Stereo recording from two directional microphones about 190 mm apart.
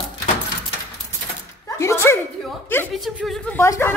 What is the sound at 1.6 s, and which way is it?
Speech, 15° left (ahead or behind).